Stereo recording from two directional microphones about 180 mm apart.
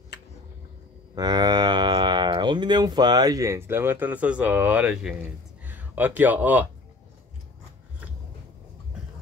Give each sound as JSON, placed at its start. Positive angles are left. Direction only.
{"t": 1.1, "sound": "speech", "side_deg": -20}